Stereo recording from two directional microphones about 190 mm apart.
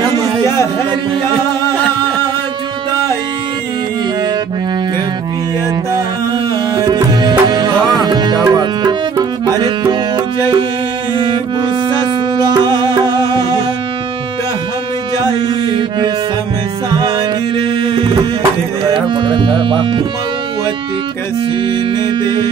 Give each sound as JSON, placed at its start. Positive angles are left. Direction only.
{"t": 6.8, "sound": "tabla", "side_deg": -20}
{"t": 12.8, "sound": "music", "side_deg": -25}
{"t": 15.4, "sound": "music", "side_deg": -25}
{"t": 17.8, "sound": "music", "side_deg": -25}
{"t": 22.2, "sound": "music", "side_deg": -25}